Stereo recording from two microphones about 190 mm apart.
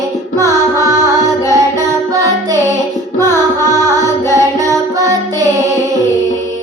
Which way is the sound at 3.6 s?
20° right (ahead or behind).